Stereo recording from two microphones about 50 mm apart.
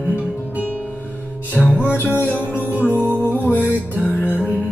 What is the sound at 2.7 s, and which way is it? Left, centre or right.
Music, right.